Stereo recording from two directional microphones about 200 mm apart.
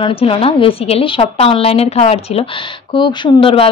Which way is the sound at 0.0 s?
25° left (ahead or behind).